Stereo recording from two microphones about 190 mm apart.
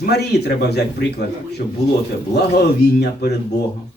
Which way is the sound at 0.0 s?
60° left (ahead or behind).